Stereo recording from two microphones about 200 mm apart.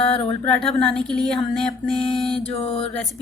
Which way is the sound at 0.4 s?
5° left (ahead or behind).